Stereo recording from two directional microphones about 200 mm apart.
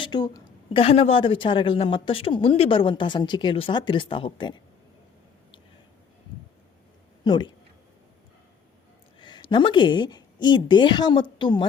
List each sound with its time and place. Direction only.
0.0 s a woman's voice: 20° left (ahead or behind)
7.3 s a woman's voice: 20° left (ahead or behind)
9.2 s a woman's voice: 20° left (ahead or behind)